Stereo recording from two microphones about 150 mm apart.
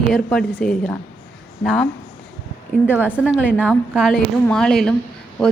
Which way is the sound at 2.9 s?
10° right (ahead or behind).